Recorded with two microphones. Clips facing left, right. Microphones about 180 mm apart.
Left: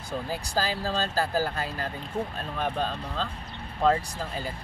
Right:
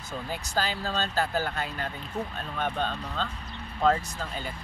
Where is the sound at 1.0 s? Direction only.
35° left (ahead or behind).